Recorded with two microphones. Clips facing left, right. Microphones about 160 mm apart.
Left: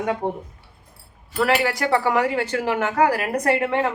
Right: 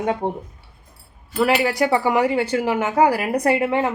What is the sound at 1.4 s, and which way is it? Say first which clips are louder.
Speech: right 2 dB; 20° right (ahead or behind).